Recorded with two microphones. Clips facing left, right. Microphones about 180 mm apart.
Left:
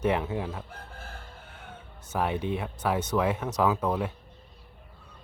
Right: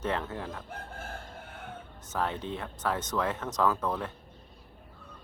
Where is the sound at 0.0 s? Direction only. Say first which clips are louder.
Left 5 dB; 10° left (ahead or behind).